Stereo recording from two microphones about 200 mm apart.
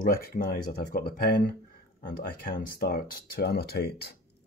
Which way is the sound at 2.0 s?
45° left (ahead or behind).